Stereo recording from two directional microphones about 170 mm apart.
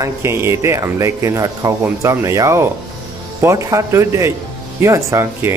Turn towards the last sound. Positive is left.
turn(degrees=-15)  # may be behind; listen again after turning